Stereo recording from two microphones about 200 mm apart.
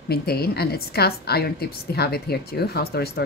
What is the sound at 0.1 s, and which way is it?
Speech, 50° left (ahead or behind).